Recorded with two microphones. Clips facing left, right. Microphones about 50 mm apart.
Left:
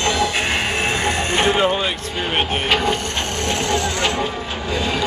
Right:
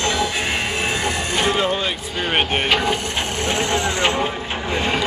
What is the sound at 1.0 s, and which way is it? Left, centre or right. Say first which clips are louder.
Vehicle: left 2 dB; left.